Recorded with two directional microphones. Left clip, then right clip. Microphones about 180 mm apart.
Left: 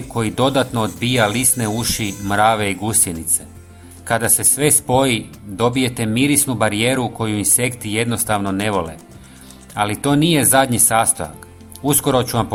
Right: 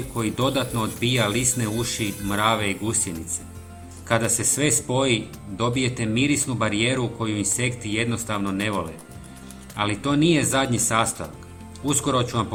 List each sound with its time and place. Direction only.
0.2 s speech: 40° left (ahead or behind)